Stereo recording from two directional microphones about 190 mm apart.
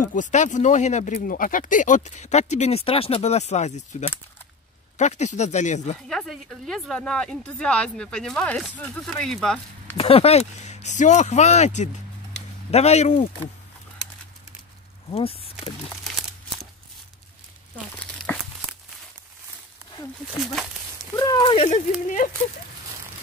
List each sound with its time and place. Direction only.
0.1 s speech: 40° left (ahead or behind)
6.0 s speech: centre (ahead or behind)
9.9 s speech: 30° left (ahead or behind)
15.0 s speech: 30° left (ahead or behind)
17.9 s crumpling: 5° left (ahead or behind)
21.2 s speech: 20° left (ahead or behind); by 22.3 s 40° left (ahead or behind)